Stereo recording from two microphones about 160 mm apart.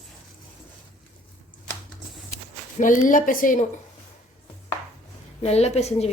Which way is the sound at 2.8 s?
55° left (ahead or behind).